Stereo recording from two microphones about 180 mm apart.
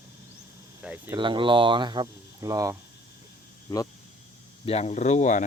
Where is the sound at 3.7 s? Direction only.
20° left (ahead or behind).